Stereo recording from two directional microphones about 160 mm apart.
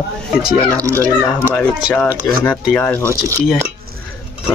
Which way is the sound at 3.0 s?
20° right (ahead or behind).